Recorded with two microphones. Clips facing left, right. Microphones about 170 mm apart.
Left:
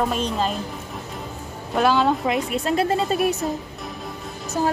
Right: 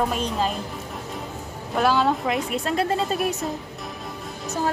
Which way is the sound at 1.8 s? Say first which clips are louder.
Left 2 dB; centre (ahead or behind).